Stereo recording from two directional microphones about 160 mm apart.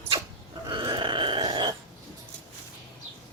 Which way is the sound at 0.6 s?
30° right (ahead or behind).